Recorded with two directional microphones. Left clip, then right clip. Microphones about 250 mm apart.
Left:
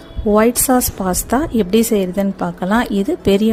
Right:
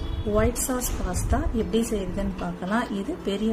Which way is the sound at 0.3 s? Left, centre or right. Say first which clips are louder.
Left 11 dB; left.